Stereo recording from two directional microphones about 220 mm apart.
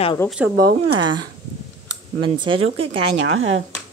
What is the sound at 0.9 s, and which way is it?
Speech, 20° right (ahead or behind).